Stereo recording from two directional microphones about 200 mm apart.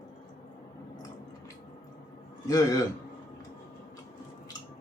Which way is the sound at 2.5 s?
20° left (ahead or behind).